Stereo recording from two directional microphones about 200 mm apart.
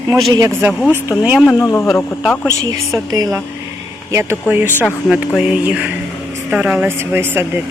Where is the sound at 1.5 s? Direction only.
15° left (ahead or behind).